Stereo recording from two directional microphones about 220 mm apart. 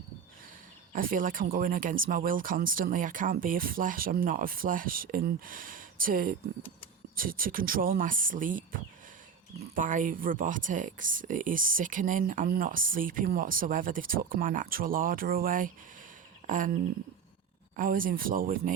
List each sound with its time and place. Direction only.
0.9 s speech: 40° right (ahead or behind)
9.7 s speech: 35° right (ahead or behind)
17.7 s speech: 40° right (ahead or behind)